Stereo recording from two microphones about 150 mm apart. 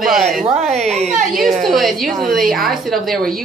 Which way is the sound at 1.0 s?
60° right (ahead or behind).